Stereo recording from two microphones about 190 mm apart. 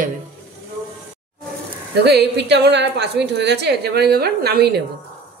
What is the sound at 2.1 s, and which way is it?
A woman's voice, 60° right (ahead or behind).